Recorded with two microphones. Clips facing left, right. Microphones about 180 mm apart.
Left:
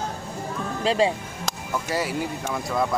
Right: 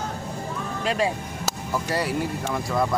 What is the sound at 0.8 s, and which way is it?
Speech, 30° left (ahead or behind).